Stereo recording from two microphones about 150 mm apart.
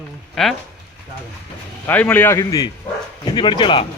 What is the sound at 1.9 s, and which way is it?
A man's voice, 10° left (ahead or behind).